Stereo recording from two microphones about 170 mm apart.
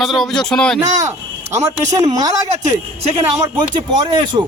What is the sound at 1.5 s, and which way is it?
A man's voice, 15° right (ahead or behind).